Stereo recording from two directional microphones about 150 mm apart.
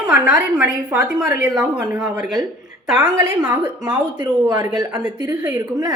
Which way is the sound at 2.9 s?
25° right (ahead or behind).